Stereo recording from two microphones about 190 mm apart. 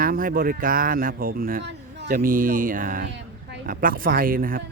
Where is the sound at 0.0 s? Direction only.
50° right (ahead or behind).